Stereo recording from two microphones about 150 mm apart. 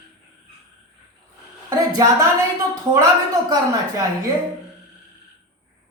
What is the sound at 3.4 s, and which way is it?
Speech, 20° right (ahead or behind).